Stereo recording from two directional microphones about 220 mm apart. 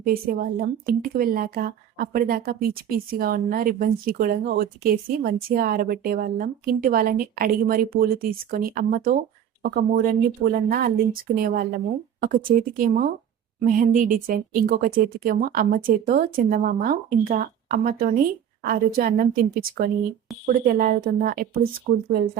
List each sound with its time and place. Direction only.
0.0 s a woman's voice: 40° right (ahead or behind)